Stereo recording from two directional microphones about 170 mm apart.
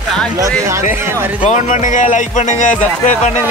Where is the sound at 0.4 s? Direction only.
15° right (ahead or behind).